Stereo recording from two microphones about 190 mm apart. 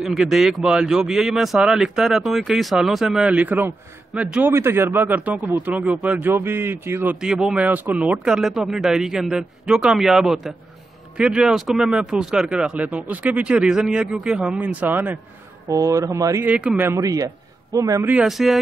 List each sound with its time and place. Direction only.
0.0 s speech: centre (ahead or behind); by 18.1 s 15° right (ahead or behind)
18.1 s speech: centre (ahead or behind)